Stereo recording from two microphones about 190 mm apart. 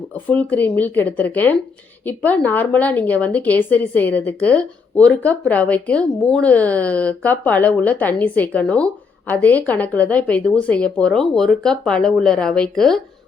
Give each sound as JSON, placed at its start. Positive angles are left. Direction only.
{"t": 0.3, "sound": "a woman's voice", "side_deg": 10}